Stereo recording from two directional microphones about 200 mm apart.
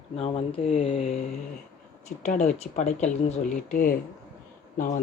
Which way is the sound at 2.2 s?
35° left (ahead or behind).